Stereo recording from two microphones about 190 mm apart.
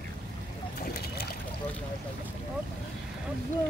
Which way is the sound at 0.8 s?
55° left (ahead or behind).